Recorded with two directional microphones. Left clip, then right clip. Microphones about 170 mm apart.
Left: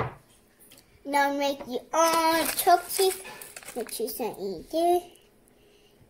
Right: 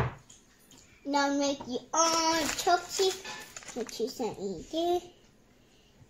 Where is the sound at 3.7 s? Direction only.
35° left (ahead or behind).